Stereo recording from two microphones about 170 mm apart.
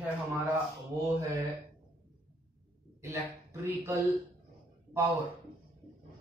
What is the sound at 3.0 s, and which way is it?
Speech, 15° right (ahead or behind).